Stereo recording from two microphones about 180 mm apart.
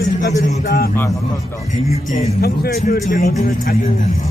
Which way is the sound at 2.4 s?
60° left (ahead or behind).